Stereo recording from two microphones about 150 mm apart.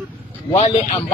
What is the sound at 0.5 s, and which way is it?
Speech, 45° left (ahead or behind).